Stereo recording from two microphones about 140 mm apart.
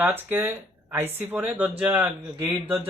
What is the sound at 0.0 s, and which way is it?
Speech, 15° right (ahead or behind).